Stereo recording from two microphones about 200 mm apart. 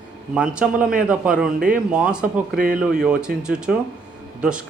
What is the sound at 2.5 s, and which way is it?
Speech, 45° right (ahead or behind).